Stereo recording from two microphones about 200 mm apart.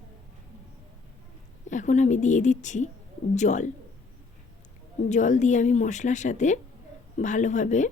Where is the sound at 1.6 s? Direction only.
40° left (ahead or behind).